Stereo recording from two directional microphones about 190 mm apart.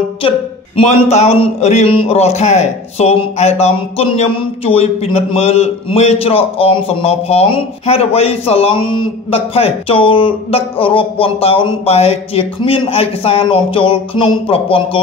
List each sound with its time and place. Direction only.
0.7 s a man's voice: 35° left (ahead or behind)